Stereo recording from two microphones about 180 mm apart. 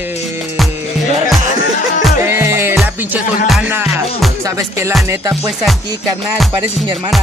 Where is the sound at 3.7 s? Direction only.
10° right (ahead or behind).